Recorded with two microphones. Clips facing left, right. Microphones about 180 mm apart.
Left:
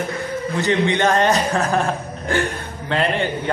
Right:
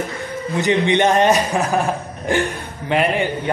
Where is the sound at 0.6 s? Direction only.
15° right (ahead or behind).